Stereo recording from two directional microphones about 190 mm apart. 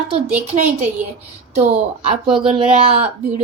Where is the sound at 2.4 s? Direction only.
30° right (ahead or behind).